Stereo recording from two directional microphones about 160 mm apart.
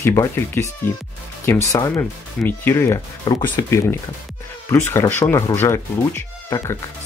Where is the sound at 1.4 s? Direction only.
15° left (ahead or behind).